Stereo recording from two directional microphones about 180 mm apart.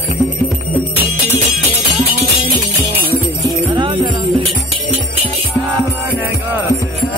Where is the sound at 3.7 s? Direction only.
25° right (ahead or behind).